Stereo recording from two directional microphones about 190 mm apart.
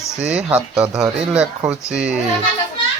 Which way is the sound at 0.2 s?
5° right (ahead or behind).